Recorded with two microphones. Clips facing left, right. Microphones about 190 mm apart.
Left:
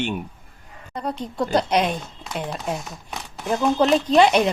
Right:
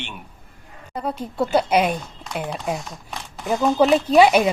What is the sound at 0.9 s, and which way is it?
Speech, 5° right (ahead or behind).